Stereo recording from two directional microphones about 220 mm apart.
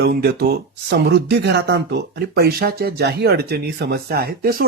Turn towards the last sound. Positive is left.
turn(degrees=-40)  # may be behind; listen again after turning